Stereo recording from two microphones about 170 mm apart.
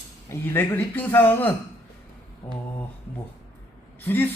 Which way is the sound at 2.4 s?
20° left (ahead or behind).